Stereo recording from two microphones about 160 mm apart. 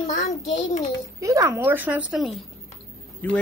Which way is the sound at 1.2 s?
20° right (ahead or behind).